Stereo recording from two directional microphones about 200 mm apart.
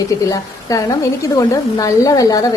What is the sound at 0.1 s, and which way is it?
A woman's voice, 15° left (ahead or behind).